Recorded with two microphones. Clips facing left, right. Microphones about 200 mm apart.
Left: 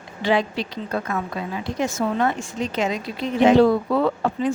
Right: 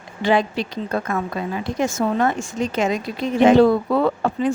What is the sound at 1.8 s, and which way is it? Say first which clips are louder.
A woman's voice: right 2 dB; 45° right (ahead or behind).